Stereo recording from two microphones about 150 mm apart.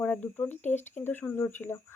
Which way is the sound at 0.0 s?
10° left (ahead or behind).